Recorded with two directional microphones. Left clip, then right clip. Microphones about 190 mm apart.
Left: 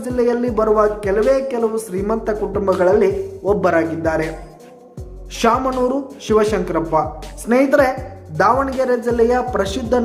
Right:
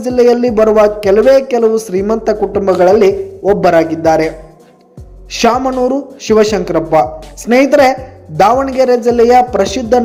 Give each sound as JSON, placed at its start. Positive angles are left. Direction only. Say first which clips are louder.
{"t": 0.0, "sound": "speech", "louder": "right 9 dB", "side_deg": -20}
{"t": 5.3, "sound": "a woman's voice", "louder": "right 5 dB", "side_deg": -20}